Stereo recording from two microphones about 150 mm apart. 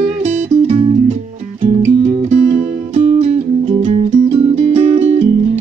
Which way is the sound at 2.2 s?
45° right (ahead or behind).